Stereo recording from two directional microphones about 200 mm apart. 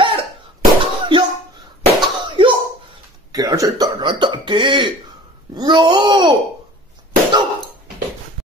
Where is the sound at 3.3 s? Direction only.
15° right (ahead or behind).